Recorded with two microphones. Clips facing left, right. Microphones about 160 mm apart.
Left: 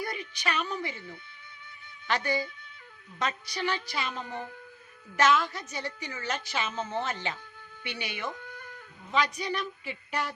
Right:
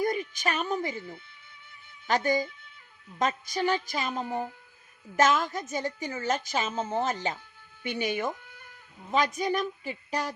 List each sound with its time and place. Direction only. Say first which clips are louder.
0.0 s a woman's voice: right 6 dB; 45° right (ahead or behind)